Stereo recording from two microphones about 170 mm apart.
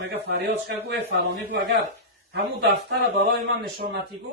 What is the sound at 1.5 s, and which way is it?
Speech, 70° right (ahead or behind).